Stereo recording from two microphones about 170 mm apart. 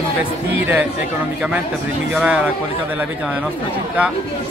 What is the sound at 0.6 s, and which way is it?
Speech, 10° right (ahead or behind).